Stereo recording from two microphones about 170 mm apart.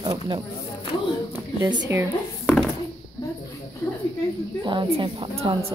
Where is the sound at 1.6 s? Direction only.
25° right (ahead or behind).